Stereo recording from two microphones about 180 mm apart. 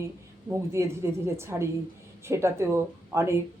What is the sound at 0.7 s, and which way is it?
A woman's voice, 15° right (ahead or behind).